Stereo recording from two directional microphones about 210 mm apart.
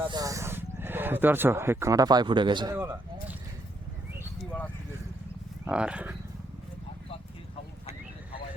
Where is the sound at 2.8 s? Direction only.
5° right (ahead or behind).